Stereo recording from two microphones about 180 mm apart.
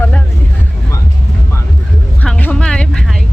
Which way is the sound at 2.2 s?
10° left (ahead or behind).